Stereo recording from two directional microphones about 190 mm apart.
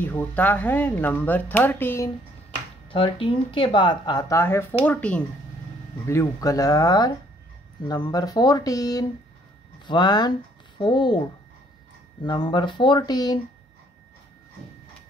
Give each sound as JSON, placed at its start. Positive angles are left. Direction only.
{"t": 0.0, "sound": "speech", "side_deg": 10}
{"t": 2.9, "sound": "speech", "side_deg": 25}